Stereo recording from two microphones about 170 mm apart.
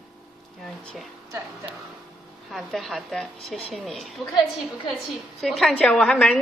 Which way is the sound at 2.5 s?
Centre (ahead or behind).